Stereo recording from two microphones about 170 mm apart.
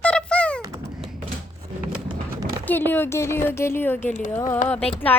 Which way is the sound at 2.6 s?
10° left (ahead or behind).